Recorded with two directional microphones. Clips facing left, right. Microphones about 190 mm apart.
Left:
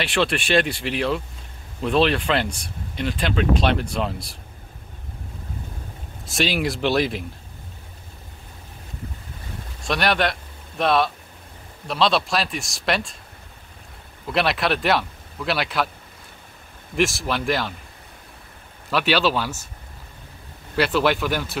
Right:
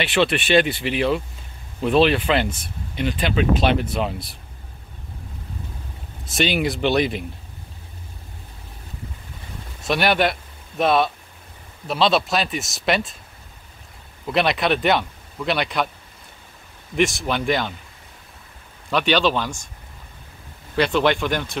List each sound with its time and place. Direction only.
0.0 s speech: centre (ahead or behind)
6.2 s speech: centre (ahead or behind)
9.8 s speech: centre (ahead or behind)
14.2 s speech: centre (ahead or behind)
16.9 s speech: centre (ahead or behind)
18.9 s speech: 5° left (ahead or behind)
20.7 s speech: 5° left (ahead or behind)